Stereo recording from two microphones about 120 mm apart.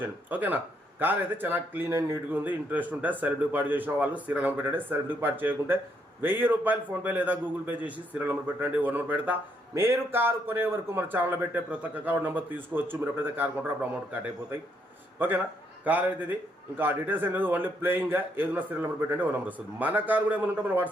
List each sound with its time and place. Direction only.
0.0 s a man's voice: 15° right (ahead or behind)
15.2 s a man's voice: 15° right (ahead or behind)